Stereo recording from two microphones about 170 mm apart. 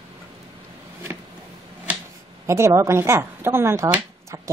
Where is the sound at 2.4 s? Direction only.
15° right (ahead or behind).